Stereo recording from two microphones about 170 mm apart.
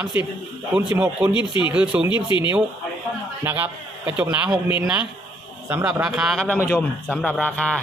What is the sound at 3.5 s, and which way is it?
A man's voice, 10° right (ahead or behind).